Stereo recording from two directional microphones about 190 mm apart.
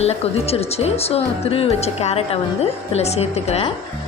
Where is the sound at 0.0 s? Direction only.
35° left (ahead or behind).